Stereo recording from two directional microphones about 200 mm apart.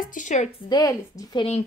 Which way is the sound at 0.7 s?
15° left (ahead or behind).